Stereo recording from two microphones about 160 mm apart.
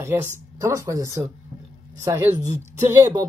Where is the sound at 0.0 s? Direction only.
15° right (ahead or behind).